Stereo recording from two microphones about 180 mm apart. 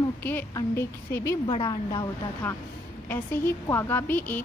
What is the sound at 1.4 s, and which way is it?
A woman's voice, 25° left (ahead or behind).